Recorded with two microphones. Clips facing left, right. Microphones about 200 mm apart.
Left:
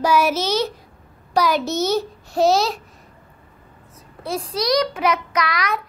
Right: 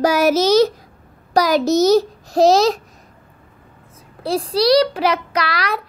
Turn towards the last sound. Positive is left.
turn(degrees=-30)  # may be behind; listen again after turning